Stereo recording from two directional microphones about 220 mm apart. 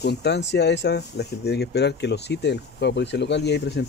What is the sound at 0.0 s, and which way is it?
Speech, 50° left (ahead or behind).